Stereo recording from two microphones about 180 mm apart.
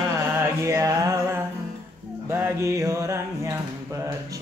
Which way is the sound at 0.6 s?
20° right (ahead or behind).